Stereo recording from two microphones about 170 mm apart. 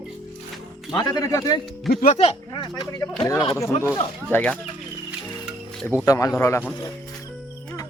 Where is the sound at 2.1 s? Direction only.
30° left (ahead or behind); by 4.5 s 10° left (ahead or behind).